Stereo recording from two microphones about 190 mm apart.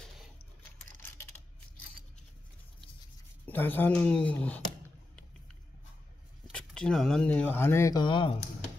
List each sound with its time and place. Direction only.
3.4 s speech: 10° left (ahead or behind)
6.4 s speech: 5° left (ahead or behind); by 8.4 s 25° left (ahead or behind)